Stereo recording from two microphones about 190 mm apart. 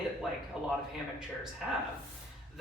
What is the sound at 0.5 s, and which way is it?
Speech, 5° right (ahead or behind).